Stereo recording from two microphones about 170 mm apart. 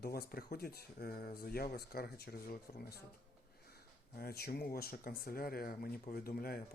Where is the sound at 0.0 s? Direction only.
65° left (ahead or behind).